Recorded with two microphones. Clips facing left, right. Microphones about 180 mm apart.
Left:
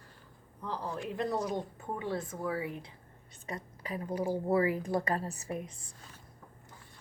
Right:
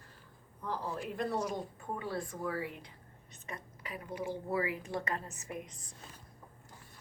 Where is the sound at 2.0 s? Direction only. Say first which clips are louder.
Left 3 dB; 20° left (ahead or behind).